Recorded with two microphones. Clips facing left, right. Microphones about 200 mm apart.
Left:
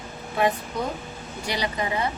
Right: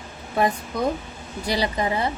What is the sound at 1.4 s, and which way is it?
Speech, 35° right (ahead or behind).